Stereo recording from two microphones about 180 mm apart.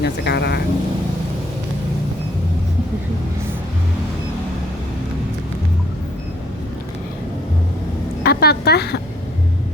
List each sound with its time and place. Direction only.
0.0 s speech: 65° left (ahead or behind)
8.2 s speech: 60° left (ahead or behind)